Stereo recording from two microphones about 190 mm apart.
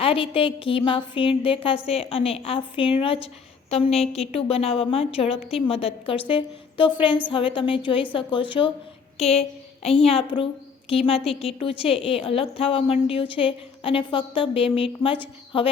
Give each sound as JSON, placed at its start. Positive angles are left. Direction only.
{"t": 0.0, "sound": "a woman's voice", "side_deg": 30}